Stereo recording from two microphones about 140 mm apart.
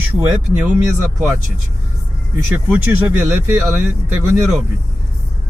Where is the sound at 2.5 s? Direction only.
10° right (ahead or behind).